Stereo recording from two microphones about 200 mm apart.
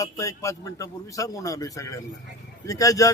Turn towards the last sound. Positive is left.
turn(degrees=15)  # may be behind; listen again after turning